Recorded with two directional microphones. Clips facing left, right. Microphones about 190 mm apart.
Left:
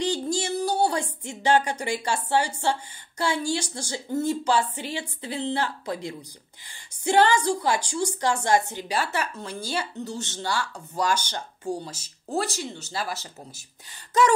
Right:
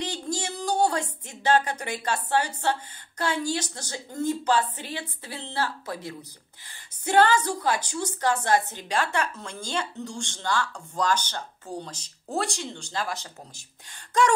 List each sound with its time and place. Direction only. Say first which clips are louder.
0.0 s a woman's voice: left 5 dB; 10° left (ahead or behind)